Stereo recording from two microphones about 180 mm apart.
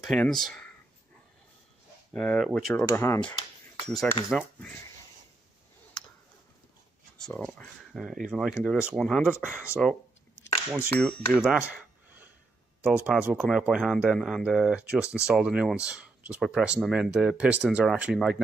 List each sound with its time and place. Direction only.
0.0 s speech: 5° left (ahead or behind)
2.1 s speech: 5° left (ahead or behind)
7.2 s speech: 5° left (ahead or behind)
9.4 s speech: 10° right (ahead or behind)
12.8 s speech: 5° right (ahead or behind)